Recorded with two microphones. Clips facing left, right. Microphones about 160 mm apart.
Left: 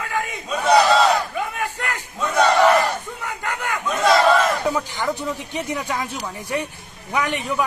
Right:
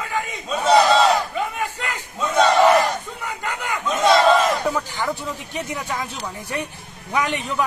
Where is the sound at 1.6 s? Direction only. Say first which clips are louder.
Left 1 dB; 15° right (ahead or behind).